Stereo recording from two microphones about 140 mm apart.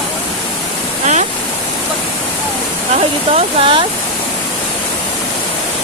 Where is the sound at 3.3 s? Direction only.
40° right (ahead or behind).